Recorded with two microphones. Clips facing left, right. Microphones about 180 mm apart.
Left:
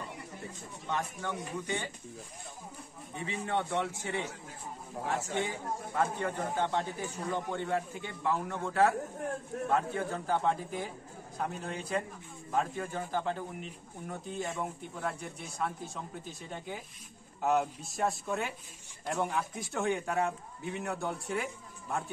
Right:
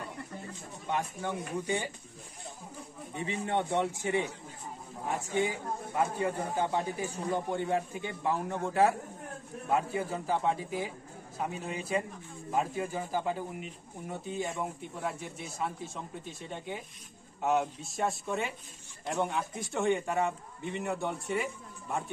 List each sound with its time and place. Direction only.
0.8 s speech: 15° right (ahead or behind)
3.3 s speech: 20° right (ahead or behind)
5.9 s a man's voice: 10° right (ahead or behind)